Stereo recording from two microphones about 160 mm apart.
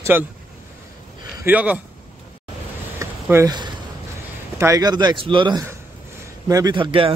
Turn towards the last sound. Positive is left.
turn(degrees=-35)  # may be behind; listen again after turning